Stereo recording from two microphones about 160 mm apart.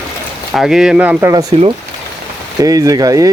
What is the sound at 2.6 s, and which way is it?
Speech, 20° right (ahead or behind).